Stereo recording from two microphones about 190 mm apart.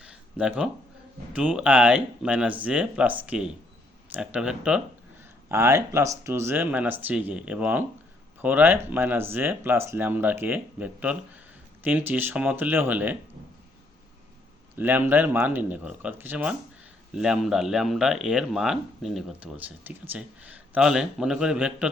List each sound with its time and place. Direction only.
0.0 s a sound: 5° right (ahead or behind)
1.3 s speech: 5° right (ahead or behind)
14.8 s speech: 10° right (ahead or behind)